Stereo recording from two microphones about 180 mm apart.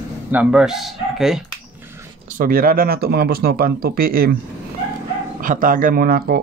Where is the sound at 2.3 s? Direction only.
55° right (ahead or behind).